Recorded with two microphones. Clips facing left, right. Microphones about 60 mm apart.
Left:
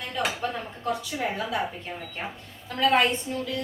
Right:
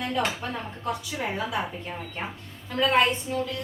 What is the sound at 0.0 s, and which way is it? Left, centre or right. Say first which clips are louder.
A woman's voice: right 1 dB; centre.